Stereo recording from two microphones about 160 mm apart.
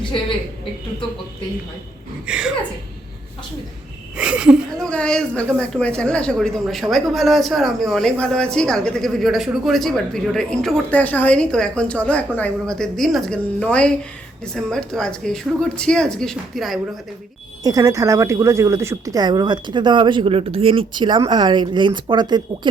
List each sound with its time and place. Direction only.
0.0 s a woman's voice: 30° left (ahead or behind)
2.2 s speech: 5° right (ahead or behind)
4.2 s speech: 5° right (ahead or behind)
4.8 s speech: 5° left (ahead or behind)
17.6 s speech: 20° right (ahead or behind)